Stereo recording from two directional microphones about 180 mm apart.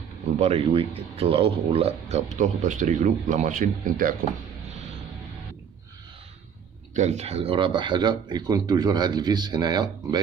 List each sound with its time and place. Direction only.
0.4 s speech: 35° right (ahead or behind); by 4.2 s 50° right (ahead or behind)
6.9 s speech: 40° right (ahead or behind); by 9.8 s 20° right (ahead or behind)